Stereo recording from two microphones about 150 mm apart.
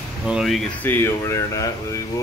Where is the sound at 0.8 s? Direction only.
15° left (ahead or behind).